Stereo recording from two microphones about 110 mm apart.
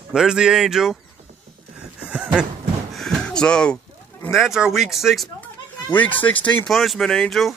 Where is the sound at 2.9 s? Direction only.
5° left (ahead or behind).